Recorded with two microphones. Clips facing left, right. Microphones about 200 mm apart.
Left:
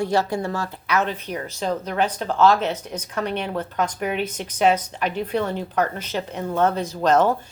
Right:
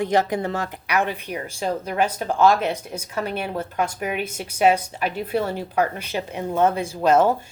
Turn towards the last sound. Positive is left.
turn(degrees=-10)  # may be behind; listen again after turning